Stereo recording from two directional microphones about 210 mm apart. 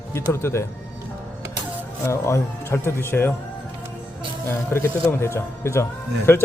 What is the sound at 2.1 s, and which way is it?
A man's voice, 15° left (ahead or behind).